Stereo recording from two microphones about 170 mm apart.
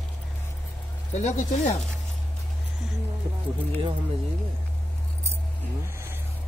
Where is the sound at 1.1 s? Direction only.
45° left (ahead or behind).